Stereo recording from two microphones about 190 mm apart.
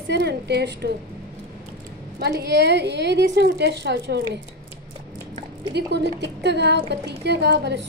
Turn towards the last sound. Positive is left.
turn(degrees=-65)  # may be behind; listen again after turning